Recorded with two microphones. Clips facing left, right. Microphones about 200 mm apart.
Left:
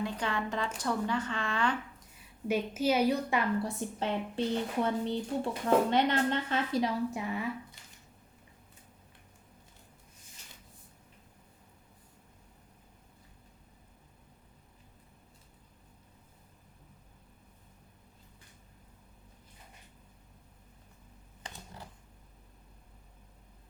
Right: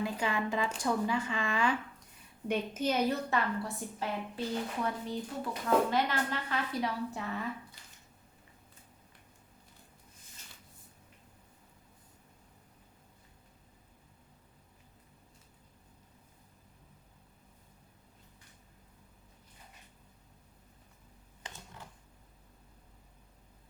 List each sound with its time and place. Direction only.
0.0 s speech: 10° right (ahead or behind)
2.5 s a woman's voice: 10° left (ahead or behind)
4.0 s a woman's voice: 25° left (ahead or behind)
21.4 s a sound: 35° left (ahead or behind)